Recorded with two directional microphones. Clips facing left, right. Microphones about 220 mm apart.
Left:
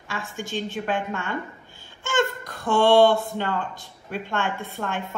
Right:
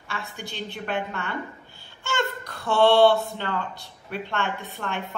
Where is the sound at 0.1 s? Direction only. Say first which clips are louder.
Left 5 dB; 45° left (ahead or behind).